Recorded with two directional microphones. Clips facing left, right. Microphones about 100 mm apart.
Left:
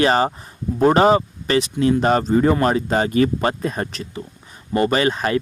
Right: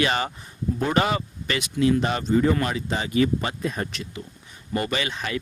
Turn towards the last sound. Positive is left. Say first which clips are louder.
# left 9 dB
turn(degrees=45)  # may be behind; listen again after turning